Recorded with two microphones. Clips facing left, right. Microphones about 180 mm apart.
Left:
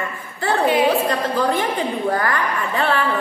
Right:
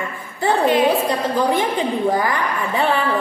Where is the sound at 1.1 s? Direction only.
15° right (ahead or behind).